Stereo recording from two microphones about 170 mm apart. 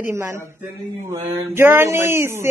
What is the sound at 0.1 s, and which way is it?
A woman's voice, 15° right (ahead or behind).